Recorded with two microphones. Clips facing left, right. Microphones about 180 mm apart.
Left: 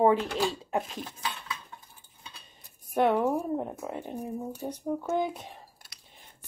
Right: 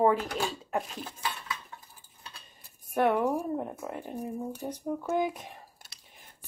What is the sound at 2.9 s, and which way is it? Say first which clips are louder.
Speech: left 1 dB; 20° left (ahead or behind).